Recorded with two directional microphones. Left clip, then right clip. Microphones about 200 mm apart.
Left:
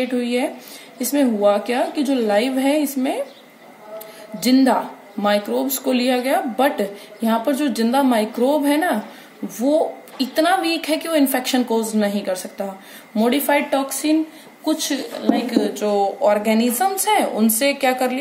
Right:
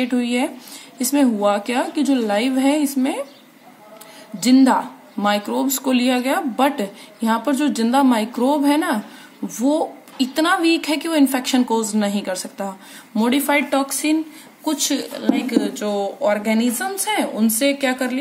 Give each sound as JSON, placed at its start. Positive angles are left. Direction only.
{"t": 0.0, "sound": "speech", "side_deg": -20}
{"t": 4.4, "sound": "a woman's voice", "side_deg": -15}